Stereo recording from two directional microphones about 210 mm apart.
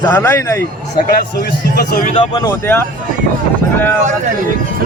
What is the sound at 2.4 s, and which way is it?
A man's voice, 15° left (ahead or behind).